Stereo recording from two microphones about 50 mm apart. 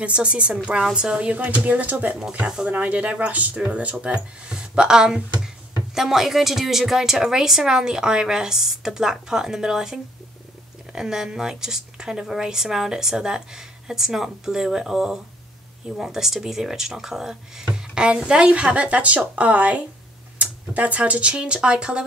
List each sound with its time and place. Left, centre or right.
0.0 s speech: right
2.4 s speech: right
2.7 s a woman's voice: right